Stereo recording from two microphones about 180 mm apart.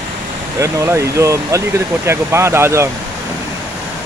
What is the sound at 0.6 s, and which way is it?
Speech, 15° right (ahead or behind).